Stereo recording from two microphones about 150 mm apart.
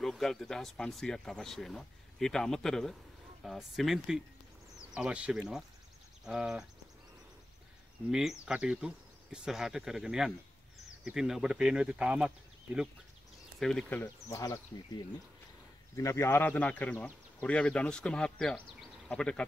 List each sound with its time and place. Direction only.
0.0 s speech: centre (ahead or behind)
8.1 s speech: 5° right (ahead or behind)
13.6 s speech: centre (ahead or behind)
14.3 s speech: 20° left (ahead or behind); by 19.4 s 5° left (ahead or behind)